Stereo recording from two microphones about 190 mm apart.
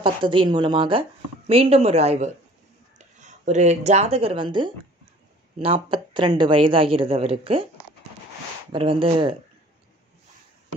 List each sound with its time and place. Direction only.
0.0 s speech: 25° right (ahead or behind)
8.7 s speech: 30° right (ahead or behind)